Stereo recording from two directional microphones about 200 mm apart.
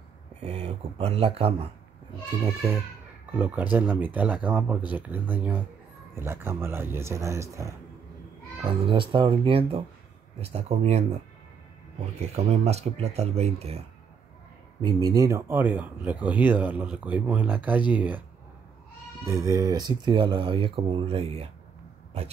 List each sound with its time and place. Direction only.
0.4 s speech: 30° right (ahead or behind)
2.4 s speech: 15° right (ahead or behind)
8.6 s speech: 25° right (ahead or behind)
12.2 s speech: 30° right (ahead or behind)
14.8 s speech: 20° right (ahead or behind)
19.2 s speech: 15° right (ahead or behind); by 21.5 s 30° right (ahead or behind)